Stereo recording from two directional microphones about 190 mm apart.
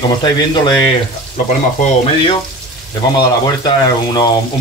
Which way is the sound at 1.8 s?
30° left (ahead or behind).